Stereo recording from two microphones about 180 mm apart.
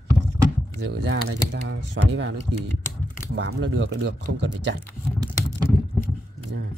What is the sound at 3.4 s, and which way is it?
Speech, 75° right (ahead or behind).